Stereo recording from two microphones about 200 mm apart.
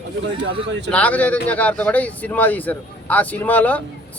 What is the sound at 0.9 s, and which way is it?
A man's voice, 5° left (ahead or behind).